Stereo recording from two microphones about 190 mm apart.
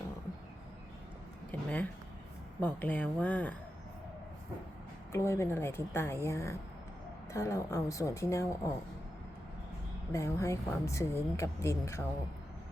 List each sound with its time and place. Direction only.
1.5 s speech: 10° left (ahead or behind)
5.1 s speech: 15° left (ahead or behind)
10.1 s speech: 15° left (ahead or behind)